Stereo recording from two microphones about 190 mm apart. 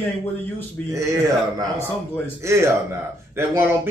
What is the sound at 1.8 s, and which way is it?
Speech, 10° left (ahead or behind).